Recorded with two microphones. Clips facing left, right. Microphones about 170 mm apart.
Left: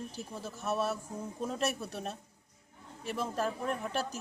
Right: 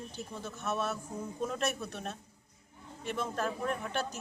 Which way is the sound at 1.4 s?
Centre (ahead or behind).